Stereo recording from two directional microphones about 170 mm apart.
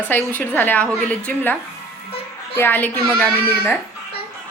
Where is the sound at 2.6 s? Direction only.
10° left (ahead or behind).